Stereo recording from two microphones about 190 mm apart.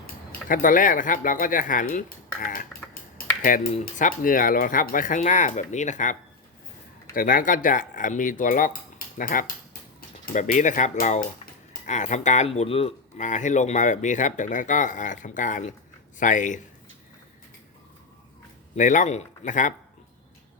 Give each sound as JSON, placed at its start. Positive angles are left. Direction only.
{"t": 0.3, "sound": "speech", "side_deg": 45}
{"t": 18.8, "sound": "speech", "side_deg": 40}